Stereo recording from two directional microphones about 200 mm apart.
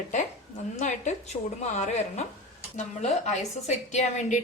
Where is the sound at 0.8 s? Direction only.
35° left (ahead or behind).